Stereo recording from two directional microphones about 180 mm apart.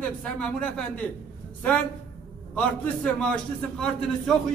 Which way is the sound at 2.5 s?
5° left (ahead or behind).